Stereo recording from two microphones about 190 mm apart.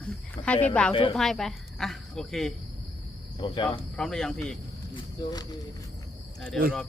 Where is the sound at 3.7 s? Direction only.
5° left (ahead or behind).